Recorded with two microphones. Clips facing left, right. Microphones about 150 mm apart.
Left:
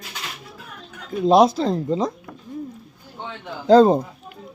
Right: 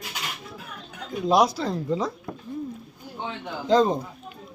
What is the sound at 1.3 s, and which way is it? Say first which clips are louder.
Speech: left 6 dB; 25° left (ahead or behind).